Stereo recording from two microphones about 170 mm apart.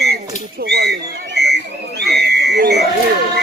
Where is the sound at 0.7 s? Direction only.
70° right (ahead or behind).